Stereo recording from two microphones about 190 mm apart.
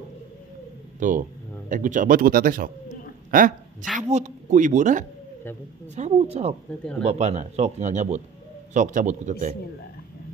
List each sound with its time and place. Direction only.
0.9 s a woman's voice: 45° right (ahead or behind)